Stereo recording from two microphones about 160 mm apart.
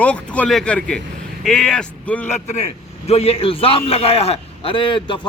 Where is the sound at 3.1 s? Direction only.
40° left (ahead or behind).